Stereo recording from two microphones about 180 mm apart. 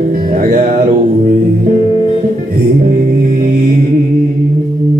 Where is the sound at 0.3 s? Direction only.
50° right (ahead or behind).